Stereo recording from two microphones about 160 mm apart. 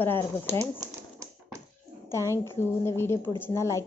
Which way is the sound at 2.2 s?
15° right (ahead or behind).